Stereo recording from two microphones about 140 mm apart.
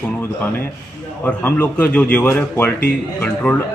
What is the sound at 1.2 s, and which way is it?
A man's voice, 10° left (ahead or behind).